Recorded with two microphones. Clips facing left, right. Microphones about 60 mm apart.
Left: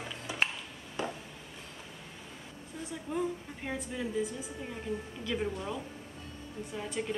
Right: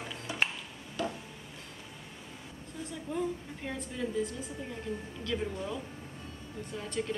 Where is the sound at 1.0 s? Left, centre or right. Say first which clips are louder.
Right 1 dB; left.